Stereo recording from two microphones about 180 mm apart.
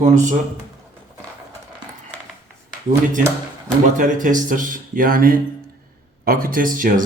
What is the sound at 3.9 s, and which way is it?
Speech, 45° right (ahead or behind).